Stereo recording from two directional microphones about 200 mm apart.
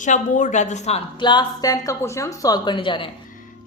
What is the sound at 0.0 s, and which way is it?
A woman's voice, 40° left (ahead or behind).